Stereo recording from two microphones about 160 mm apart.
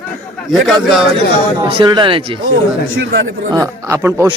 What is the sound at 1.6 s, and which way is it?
Speech, 30° right (ahead or behind).